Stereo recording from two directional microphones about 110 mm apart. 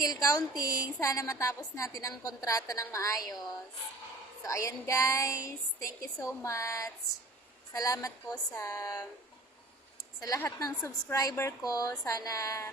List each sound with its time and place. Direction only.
0.0 s a woman's voice: 35° left (ahead or behind)
4.4 s a woman's voice: 30° left (ahead or behind)
10.2 s a woman's voice: 30° left (ahead or behind)